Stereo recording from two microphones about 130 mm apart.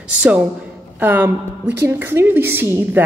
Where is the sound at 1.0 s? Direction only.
15° right (ahead or behind).